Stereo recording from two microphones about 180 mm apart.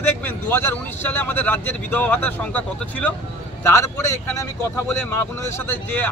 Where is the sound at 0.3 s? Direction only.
10° left (ahead or behind).